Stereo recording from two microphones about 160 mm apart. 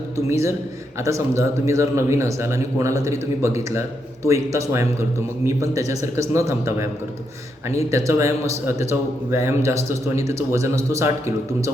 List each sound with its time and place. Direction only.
0.3 s a man's voice: 15° right (ahead or behind)